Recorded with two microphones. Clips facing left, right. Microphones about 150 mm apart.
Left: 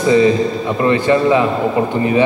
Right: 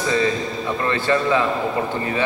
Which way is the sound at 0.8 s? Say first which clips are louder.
Left 7 dB; 15° left (ahead or behind).